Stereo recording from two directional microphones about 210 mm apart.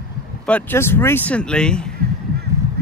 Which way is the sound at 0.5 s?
10° left (ahead or behind).